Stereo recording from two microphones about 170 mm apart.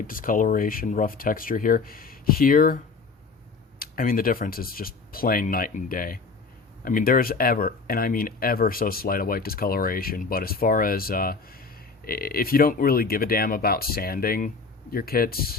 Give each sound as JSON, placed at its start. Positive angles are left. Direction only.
{"t": 0.1, "sound": "speech", "side_deg": 55}
{"t": 3.8, "sound": "speech", "side_deg": 55}